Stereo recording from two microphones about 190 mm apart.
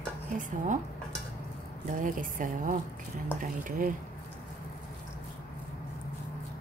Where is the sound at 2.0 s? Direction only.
45° right (ahead or behind).